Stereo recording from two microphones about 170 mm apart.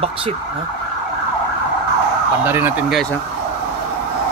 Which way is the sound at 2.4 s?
10° right (ahead or behind).